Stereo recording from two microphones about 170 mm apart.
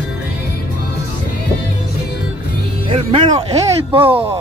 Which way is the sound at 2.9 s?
35° right (ahead or behind).